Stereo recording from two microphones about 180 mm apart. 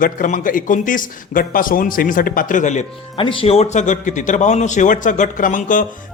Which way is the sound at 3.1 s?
30° left (ahead or behind).